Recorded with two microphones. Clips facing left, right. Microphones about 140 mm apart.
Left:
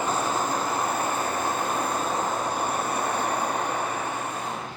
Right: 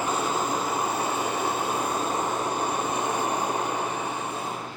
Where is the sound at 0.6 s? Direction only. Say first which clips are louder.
Even; 10° right (ahead or behind).